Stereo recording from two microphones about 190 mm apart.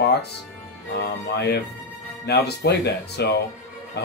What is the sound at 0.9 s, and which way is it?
Speech, 60° left (ahead or behind).